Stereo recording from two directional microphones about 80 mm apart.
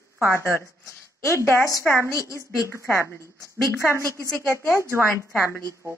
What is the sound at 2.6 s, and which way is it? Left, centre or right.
Speech, right.